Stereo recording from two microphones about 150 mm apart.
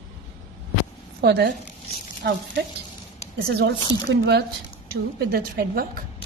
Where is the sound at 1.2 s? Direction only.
90° right.